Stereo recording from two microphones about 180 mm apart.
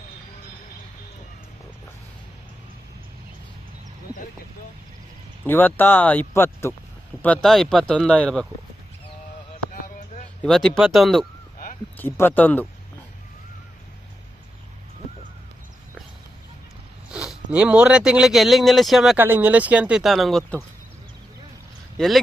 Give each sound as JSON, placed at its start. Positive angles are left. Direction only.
{"t": 5.5, "sound": "speech", "side_deg": 10}
{"t": 10.4, "sound": "speech", "side_deg": 5}
{"t": 11.9, "sound": "speech", "side_deg": 10}
{"t": 17.1, "sound": "speech", "side_deg": -5}
{"t": 21.9, "sound": "speech", "side_deg": 0}